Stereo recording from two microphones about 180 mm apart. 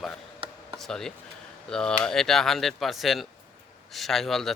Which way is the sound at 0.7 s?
Centre (ahead or behind).